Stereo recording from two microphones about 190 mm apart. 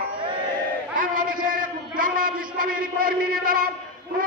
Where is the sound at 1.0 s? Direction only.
45° right (ahead or behind).